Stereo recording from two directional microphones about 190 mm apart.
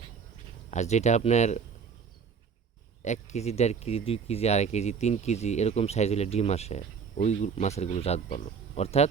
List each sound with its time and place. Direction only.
0.7 s speech: 35° left (ahead or behind)
3.0 s speech: 40° left (ahead or behind)